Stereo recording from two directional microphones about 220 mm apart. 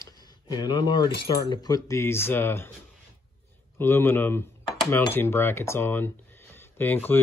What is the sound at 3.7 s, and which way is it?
Speech, 10° left (ahead or behind).